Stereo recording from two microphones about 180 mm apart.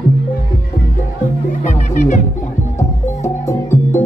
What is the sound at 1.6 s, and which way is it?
Music, 40° left (ahead or behind).